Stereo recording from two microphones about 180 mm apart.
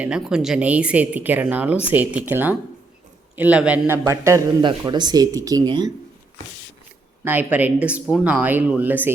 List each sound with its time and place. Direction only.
0.0 s speech: 5° right (ahead or behind); by 5.9 s 25° right (ahead or behind)
7.3 s speech: 10° right (ahead or behind)